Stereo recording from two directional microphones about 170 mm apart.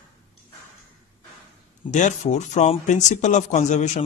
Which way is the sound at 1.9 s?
45° left (ahead or behind).